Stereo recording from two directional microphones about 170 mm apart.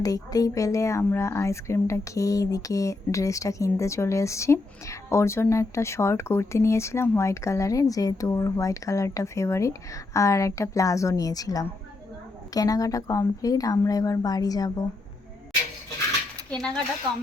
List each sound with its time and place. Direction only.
0.0 s a woman's voice: 20° left (ahead or behind)
16.5 s speech: 5° left (ahead or behind)